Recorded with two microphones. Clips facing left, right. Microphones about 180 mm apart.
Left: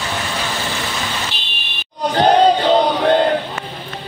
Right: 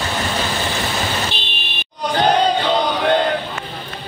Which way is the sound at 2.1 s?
35° left (ahead or behind).